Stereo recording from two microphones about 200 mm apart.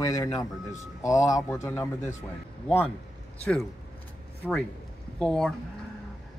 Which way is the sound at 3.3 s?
5° left (ahead or behind).